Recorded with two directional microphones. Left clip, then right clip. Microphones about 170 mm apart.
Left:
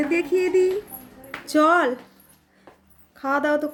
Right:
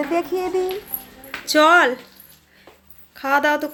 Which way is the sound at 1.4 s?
10° left (ahead or behind).